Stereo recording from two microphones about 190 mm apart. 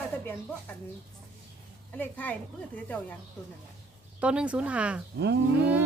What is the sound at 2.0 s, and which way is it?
Speech, 10° left (ahead or behind).